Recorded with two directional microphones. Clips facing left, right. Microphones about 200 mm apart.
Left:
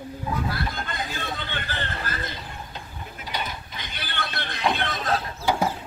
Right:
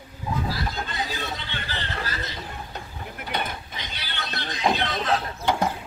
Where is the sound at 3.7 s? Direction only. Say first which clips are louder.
Left 1 dB; 50° left (ahead or behind).